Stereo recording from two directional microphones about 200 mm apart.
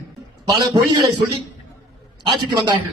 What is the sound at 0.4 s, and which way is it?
A man's voice, 20° right (ahead or behind).